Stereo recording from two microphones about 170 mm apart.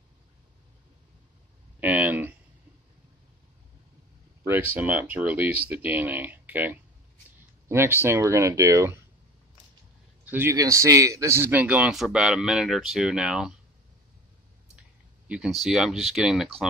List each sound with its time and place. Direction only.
1.8 s speech: 10° right (ahead or behind)
4.5 s speech: 10° right (ahead or behind)
10.3 s speech: 15° right (ahead or behind)
15.2 s speech: 5° right (ahead or behind)